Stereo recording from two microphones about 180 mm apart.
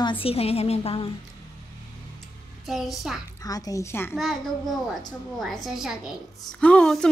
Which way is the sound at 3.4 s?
20° left (ahead or behind).